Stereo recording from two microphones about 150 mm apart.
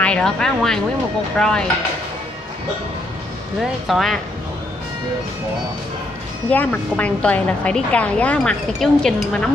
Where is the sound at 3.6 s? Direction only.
Centre (ahead or behind).